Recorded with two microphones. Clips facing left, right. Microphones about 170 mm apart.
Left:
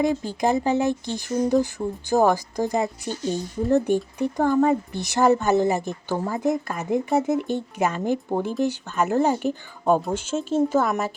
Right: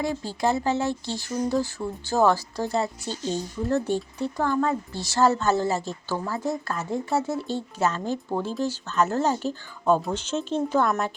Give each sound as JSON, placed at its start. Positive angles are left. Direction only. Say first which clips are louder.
{"t": 0.0, "sound": "speech", "louder": "left 4 dB", "side_deg": 20}